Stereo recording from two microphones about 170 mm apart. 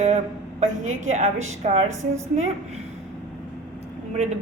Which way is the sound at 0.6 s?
45° right (ahead or behind).